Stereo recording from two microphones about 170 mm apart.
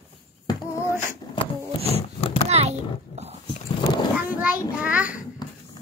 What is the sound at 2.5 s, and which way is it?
Oink, 40° right (ahead or behind).